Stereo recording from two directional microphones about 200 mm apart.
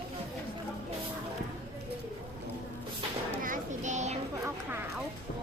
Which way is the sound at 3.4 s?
40° right (ahead or behind).